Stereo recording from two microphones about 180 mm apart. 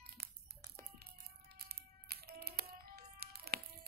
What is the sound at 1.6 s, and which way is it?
Music, 60° right (ahead or behind).